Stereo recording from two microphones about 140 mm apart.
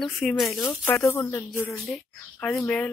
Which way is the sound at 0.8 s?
15° left (ahead or behind).